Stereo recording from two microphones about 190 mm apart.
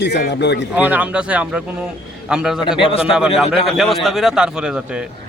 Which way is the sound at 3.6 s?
Centre (ahead or behind).